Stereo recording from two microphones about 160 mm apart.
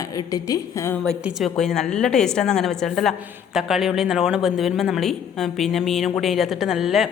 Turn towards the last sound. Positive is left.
turn(degrees=0)  # may be behind; listen again after turning